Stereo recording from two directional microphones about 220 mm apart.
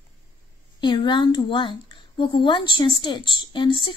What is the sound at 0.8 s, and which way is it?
Speech, 20° left (ahead or behind).